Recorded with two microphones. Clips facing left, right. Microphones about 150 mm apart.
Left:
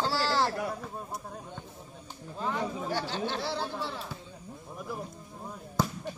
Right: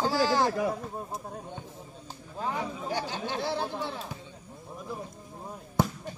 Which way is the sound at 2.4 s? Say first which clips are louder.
Even; 15° right (ahead or behind).